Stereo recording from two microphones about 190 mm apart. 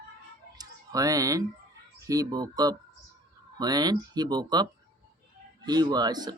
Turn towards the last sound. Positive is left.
turn(degrees=-20)  # may be behind; listen again after turning